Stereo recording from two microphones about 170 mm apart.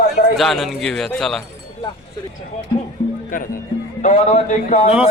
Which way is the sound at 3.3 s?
55° left (ahead or behind).